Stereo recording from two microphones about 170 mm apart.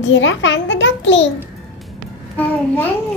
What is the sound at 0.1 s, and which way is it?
A child's voice, 90° left.